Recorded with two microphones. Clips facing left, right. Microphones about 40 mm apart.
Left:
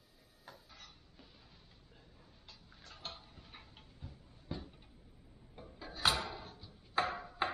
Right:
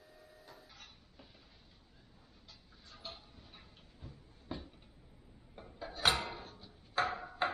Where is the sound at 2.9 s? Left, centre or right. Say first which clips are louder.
Left 1 dB; left.